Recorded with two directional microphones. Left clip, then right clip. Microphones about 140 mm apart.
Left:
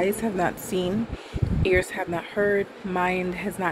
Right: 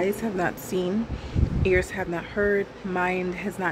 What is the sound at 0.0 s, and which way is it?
Speech, 20° right (ahead or behind).